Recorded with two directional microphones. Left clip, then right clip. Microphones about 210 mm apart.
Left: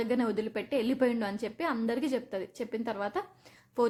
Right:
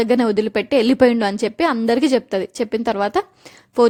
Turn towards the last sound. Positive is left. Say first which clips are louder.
# right 14 dB
turn(degrees=-35)  # may be behind; listen again after turning